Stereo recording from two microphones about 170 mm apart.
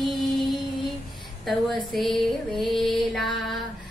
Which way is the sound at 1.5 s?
Centre (ahead or behind).